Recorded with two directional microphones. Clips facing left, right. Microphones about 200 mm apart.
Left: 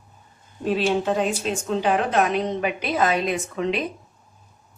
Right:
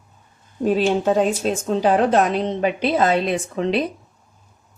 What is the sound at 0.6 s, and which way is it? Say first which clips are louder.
A woman's voice: right 4 dB; 45° right (ahead or behind).